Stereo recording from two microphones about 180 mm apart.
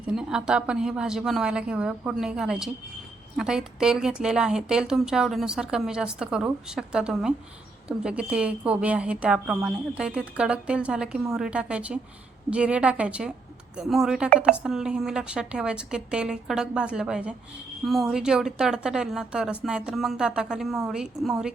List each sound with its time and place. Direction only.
0.0 s a woman's voice: 5° right (ahead or behind)